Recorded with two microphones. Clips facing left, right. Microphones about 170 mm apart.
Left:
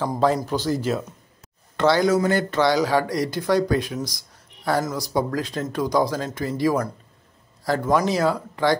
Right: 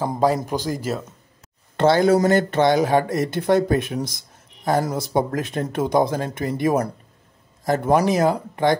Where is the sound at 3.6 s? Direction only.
25° right (ahead or behind).